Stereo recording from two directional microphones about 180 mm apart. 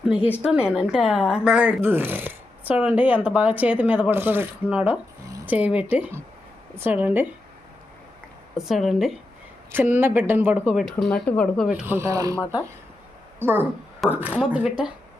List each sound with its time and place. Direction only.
0.4 s speech: 5° right (ahead or behind)
8.5 s a woman's voice: centre (ahead or behind)
11.7 s speech: 10° right (ahead or behind)
13.4 s a woman's voice: 10° right (ahead or behind)